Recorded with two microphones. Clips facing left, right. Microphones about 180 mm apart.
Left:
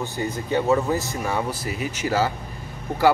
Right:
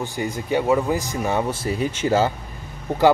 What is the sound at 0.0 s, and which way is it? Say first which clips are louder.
Speech: right 1 dB; 15° right (ahead or behind).